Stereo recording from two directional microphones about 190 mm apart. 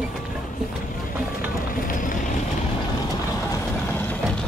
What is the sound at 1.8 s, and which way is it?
Boat, 45° left (ahead or behind).